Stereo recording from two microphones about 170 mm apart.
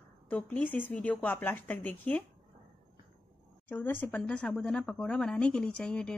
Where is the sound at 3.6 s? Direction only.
10° left (ahead or behind).